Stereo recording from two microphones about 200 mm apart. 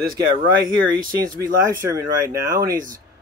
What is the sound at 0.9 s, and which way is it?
Speech, 15° right (ahead or behind).